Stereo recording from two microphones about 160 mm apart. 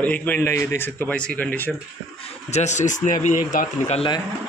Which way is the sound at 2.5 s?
45° left (ahead or behind).